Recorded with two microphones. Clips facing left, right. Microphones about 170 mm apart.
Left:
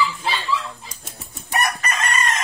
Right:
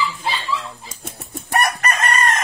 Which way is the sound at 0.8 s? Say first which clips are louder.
Right 4 dB; 55° right (ahead or behind).